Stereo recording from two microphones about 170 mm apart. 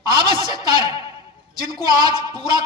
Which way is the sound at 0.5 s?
25° right (ahead or behind).